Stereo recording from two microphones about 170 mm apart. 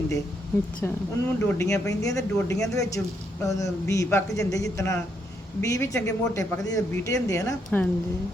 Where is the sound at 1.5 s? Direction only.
15° left (ahead or behind).